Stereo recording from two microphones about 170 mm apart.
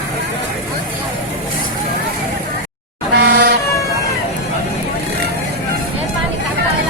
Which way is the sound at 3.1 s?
75° right (ahead or behind).